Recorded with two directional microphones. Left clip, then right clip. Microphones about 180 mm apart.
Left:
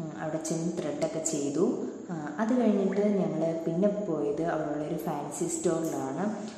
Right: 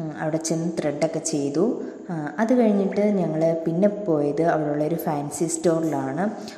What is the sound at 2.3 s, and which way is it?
A woman's voice, 40° right (ahead or behind).